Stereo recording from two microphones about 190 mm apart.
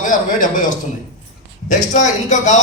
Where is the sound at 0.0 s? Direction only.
45° left (ahead or behind).